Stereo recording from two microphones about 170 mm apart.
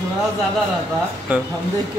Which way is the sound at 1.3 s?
10° right (ahead or behind).